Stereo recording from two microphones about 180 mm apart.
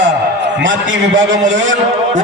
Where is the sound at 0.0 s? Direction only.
85° right.